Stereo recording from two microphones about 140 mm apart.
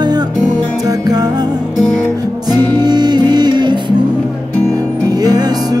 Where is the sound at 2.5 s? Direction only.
30° right (ahead or behind).